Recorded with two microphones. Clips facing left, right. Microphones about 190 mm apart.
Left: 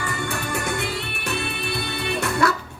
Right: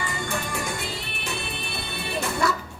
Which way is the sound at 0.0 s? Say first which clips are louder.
Left 2 dB; 65° left (ahead or behind).